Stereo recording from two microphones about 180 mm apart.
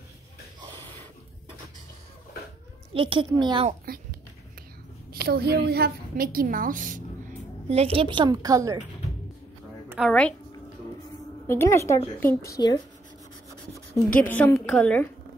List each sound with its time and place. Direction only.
2.9 s a child's voice: 30° right (ahead or behind)
3.9 s speech: 55° right (ahead or behind)
5.1 s a woman's voice: 60° right (ahead or behind)
7.6 s a woman's voice: 35° right (ahead or behind); by 8.7 s 20° right (ahead or behind)
9.8 s a woman's voice: centre (ahead or behind)
11.4 s a woman's voice: 15° left (ahead or behind)
14.3 s a woman's voice: 5° left (ahead or behind)